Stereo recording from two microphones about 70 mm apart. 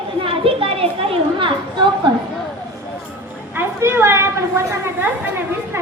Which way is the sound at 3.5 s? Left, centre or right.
Right.